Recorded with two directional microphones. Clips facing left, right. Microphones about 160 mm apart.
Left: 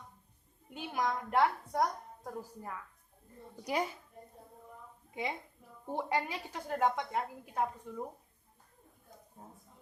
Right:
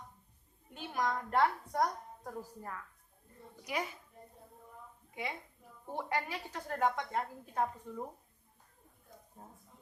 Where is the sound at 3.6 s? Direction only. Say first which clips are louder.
Left 4 dB; 30° left (ahead or behind).